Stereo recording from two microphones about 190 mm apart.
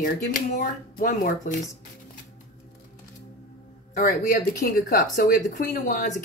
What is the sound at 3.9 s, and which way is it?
Speech, 45° left (ahead or behind).